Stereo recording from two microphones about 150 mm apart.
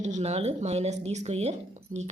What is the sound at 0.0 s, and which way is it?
Speech, 50° right (ahead or behind).